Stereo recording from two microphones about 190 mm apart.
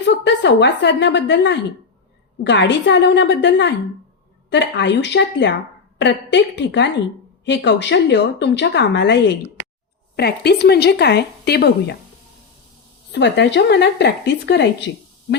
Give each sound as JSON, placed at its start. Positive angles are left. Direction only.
{"t": 0.1, "sound": "a woman's voice", "side_deg": 65}
{"t": 13.1, "sound": "a woman's voice", "side_deg": 65}